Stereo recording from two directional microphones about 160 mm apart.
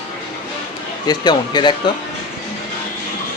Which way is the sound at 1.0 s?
25° left (ahead or behind).